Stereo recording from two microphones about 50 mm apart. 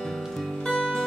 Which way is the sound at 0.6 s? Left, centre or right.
Centre.